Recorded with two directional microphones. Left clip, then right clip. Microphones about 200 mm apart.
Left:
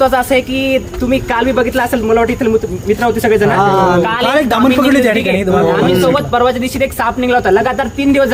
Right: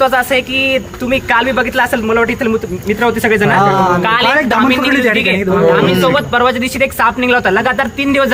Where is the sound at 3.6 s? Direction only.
55° right (ahead or behind).